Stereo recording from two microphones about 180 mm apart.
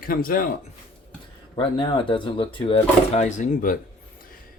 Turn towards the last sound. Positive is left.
turn(degrees=45)  # may be behind; listen again after turning